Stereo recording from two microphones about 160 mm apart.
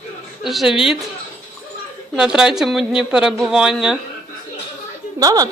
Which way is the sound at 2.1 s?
5° right (ahead or behind).